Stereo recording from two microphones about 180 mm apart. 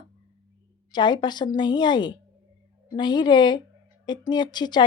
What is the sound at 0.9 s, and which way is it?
Speech, 25° left (ahead or behind).